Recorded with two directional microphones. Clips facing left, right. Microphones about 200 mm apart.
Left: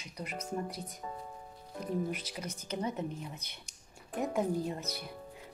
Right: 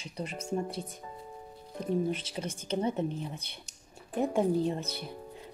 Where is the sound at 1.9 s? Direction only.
30° right (ahead or behind).